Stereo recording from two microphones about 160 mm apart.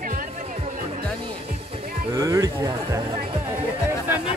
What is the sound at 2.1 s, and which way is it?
Speech, 20° right (ahead or behind).